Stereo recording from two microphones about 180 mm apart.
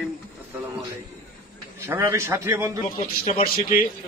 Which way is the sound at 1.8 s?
15° right (ahead or behind).